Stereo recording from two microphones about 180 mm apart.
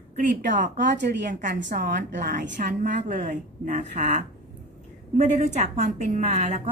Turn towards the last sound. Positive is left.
turn(degrees=-40)  # may be behind; listen again after turning